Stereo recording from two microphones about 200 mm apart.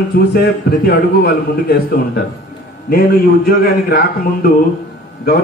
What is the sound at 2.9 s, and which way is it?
A man's voice, 50° left (ahead or behind).